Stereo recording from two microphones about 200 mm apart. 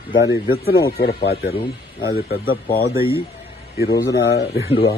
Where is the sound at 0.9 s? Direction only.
55° left (ahead or behind).